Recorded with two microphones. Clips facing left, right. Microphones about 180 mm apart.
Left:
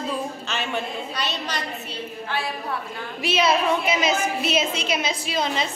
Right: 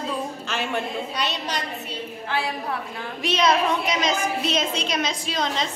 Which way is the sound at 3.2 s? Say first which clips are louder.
Even; 5° left (ahead or behind).